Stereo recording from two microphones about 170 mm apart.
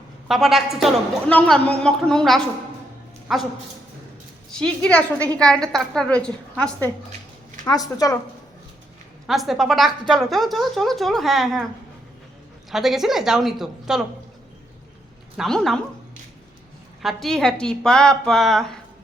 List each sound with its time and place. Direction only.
0.3 s a woman's voice: centre (ahead or behind)
4.5 s a woman's voice: 5° left (ahead or behind)
7.6 s speech: 20° left (ahead or behind)
9.2 s a woman's voice: centre (ahead or behind)
12.7 s a woman's voice: centre (ahead or behind)
15.4 s a woman's voice: centre (ahead or behind)
17.0 s a woman's voice: centre (ahead or behind)